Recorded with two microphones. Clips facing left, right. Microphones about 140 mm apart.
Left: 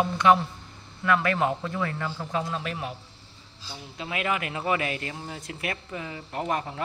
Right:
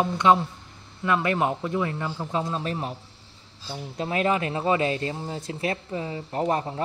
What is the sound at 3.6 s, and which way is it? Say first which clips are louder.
Speech: right 7 dB; 50° right (ahead or behind).